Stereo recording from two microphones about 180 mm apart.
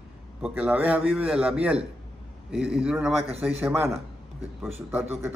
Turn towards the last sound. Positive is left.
turn(degrees=-15)  # may be behind; listen again after turning